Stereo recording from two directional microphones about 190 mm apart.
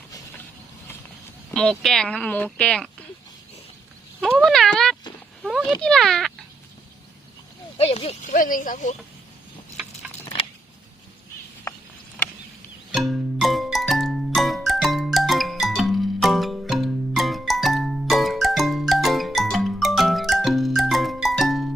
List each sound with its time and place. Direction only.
1.5 s a sound: 5° left (ahead or behind)
1.8 s speech: centre (ahead or behind)
4.2 s speech: centre (ahead or behind)
5.4 s a sound: centre (ahead or behind)
5.8 s speech: centre (ahead or behind)
7.8 s speech: 30° left (ahead or behind)
12.9 s music: centre (ahead or behind)